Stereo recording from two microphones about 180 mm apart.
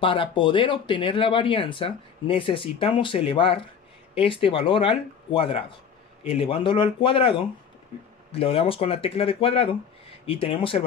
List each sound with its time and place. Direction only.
0.0 s speech: 30° left (ahead or behind)